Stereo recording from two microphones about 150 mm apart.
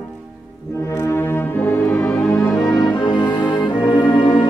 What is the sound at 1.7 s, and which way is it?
Music, 10° left (ahead or behind).